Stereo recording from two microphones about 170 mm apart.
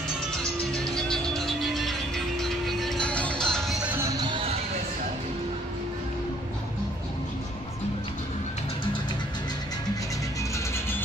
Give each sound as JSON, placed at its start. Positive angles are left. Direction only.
{"t": 0.4, "sound": "music", "side_deg": 5}
{"t": 4.2, "sound": "music", "side_deg": -30}